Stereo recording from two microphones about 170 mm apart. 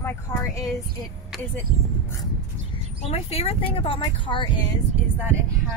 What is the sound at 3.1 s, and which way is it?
Speech, 35° left (ahead or behind).